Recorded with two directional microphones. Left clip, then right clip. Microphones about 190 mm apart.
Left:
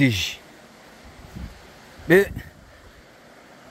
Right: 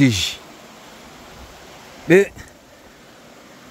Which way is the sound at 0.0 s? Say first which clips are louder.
Right 4 dB; 15° right (ahead or behind).